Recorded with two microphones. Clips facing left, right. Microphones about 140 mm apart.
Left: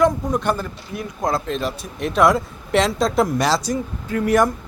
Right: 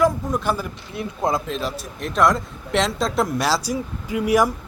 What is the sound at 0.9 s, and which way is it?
Speech, 25° right (ahead or behind).